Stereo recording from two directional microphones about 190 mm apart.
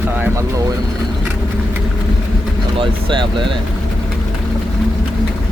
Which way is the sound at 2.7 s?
25° right (ahead or behind).